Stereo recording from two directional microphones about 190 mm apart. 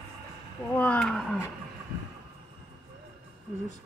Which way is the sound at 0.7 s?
5° left (ahead or behind).